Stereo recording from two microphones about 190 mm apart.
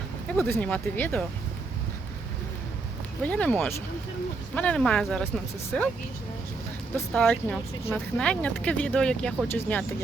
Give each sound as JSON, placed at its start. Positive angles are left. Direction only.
{"t": 0.3, "sound": "speech", "side_deg": 5}
{"t": 3.2, "sound": "speech", "side_deg": 5}
{"t": 6.9, "sound": "speech", "side_deg": 5}